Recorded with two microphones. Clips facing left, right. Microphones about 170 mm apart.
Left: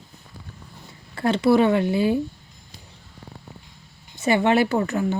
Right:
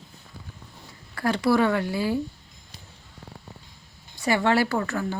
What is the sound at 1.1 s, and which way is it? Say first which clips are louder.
A woman's voice: left 4 dB; 25° left (ahead or behind).